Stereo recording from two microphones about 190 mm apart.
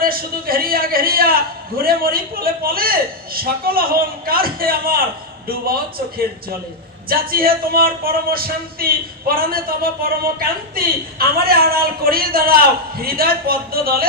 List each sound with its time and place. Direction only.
0.0 s a man's voice: 50° right (ahead or behind)